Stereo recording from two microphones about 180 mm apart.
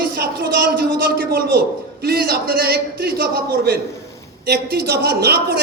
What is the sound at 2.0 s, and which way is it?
A man's voice, 55° right (ahead or behind).